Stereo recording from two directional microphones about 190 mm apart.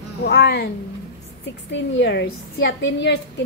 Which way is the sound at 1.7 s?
70° left (ahead or behind).